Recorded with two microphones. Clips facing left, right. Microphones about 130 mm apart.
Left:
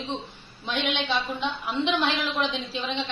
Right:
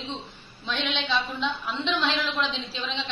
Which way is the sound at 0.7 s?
55° left (ahead or behind).